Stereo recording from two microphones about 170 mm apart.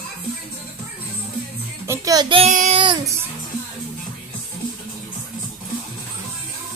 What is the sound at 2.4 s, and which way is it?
Child singing, 45° right (ahead or behind).